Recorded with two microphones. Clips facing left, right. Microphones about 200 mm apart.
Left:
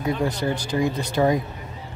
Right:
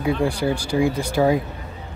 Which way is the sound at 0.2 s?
10° right (ahead or behind).